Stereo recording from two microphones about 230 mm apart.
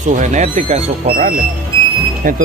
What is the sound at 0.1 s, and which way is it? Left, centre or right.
Speech, right.